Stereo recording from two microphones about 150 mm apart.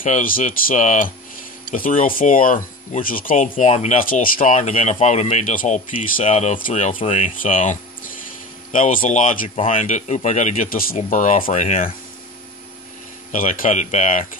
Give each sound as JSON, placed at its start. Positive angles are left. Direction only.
{"t": 0.0, "sound": "speech", "side_deg": 65}
{"t": 6.2, "sound": "speech", "side_deg": 45}
{"t": 7.0, "sound": "speech", "side_deg": 40}
{"t": 7.6, "sound": "a sound", "side_deg": 60}
{"t": 8.7, "sound": "speech", "side_deg": 60}
{"t": 9.6, "sound": "speech", "side_deg": 40}
{"t": 9.8, "sound": "speech", "side_deg": 50}
{"t": 11.0, "sound": "speech", "side_deg": 60}
{"t": 13.3, "sound": "speech", "side_deg": 60}